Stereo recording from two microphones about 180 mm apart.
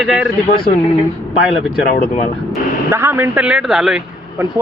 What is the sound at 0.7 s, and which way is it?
Speech, 40° left (ahead or behind).